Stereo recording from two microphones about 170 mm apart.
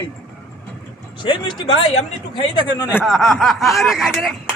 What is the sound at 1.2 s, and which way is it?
Speech, 30° left (ahead or behind).